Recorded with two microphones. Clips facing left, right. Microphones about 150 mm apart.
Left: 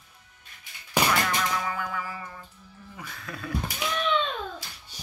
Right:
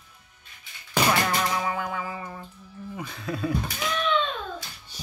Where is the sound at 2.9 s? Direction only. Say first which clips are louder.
Right 7 dB; 25° right (ahead or behind).